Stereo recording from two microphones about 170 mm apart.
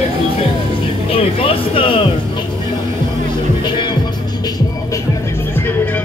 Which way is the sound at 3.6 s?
25° left (ahead or behind).